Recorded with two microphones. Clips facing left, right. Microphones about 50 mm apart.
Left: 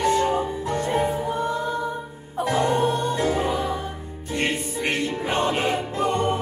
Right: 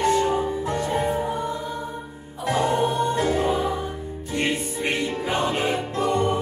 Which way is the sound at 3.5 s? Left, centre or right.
Centre.